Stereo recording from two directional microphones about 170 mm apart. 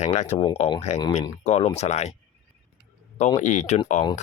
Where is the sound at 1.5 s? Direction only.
40° left (ahead or behind).